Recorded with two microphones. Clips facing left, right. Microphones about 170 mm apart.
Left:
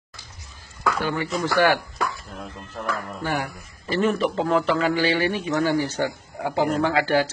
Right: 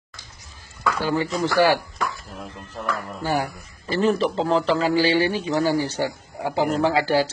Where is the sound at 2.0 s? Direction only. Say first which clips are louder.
Even; centre (ahead or behind).